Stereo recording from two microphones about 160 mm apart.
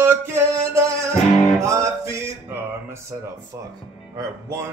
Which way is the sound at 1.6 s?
20° right (ahead or behind).